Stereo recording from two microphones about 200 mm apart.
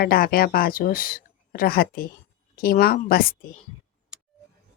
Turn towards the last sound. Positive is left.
turn(degrees=-5)  # may be behind; listen again after turning